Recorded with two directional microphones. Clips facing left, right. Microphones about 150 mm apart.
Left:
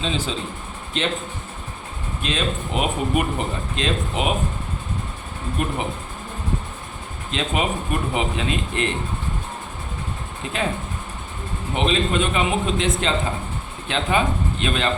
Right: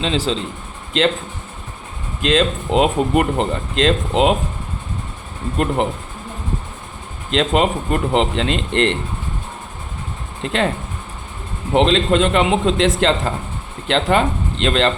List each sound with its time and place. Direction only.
0.0 s speech: 90° right
2.2 s speech: 90° right
5.5 s speech: 90° right
7.3 s speech: 90° right
10.4 s speech: 80° right
11.7 s speech: 90° right
13.8 s speech: 80° right